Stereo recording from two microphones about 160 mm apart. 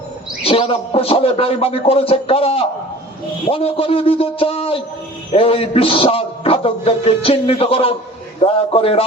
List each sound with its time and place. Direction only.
0.4 s music: 35° left (ahead or behind)